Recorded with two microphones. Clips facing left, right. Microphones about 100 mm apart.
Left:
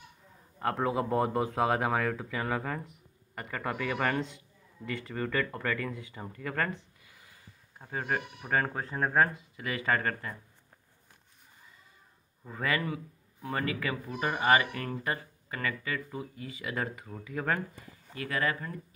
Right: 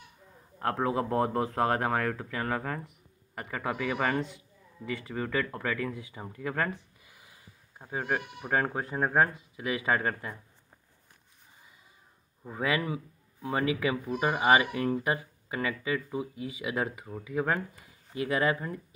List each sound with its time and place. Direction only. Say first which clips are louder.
0.6 s speech: right 1 dB; centre (ahead or behind)
12.4 s speech: right 2 dB; 10° right (ahead or behind)
17.7 s speech: right 6 dB; 15° right (ahead or behind)